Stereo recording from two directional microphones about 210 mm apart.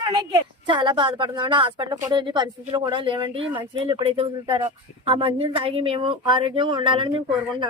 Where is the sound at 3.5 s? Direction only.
25° right (ahead or behind).